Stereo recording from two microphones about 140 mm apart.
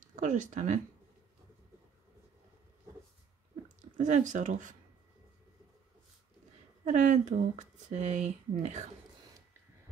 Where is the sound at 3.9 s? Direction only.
60° right (ahead or behind).